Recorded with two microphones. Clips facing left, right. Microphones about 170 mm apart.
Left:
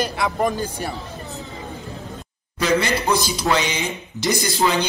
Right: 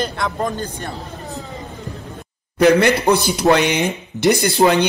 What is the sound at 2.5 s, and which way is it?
A man's voice, 60° right (ahead or behind).